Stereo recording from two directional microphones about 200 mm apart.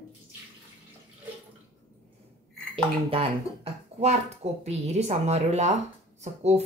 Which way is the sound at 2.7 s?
30° right (ahead or behind).